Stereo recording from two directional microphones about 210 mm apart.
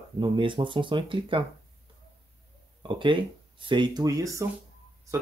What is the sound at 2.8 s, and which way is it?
Speech, 25° right (ahead or behind).